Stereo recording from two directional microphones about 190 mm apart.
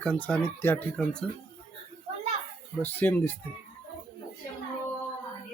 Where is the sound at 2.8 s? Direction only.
10° left (ahead or behind).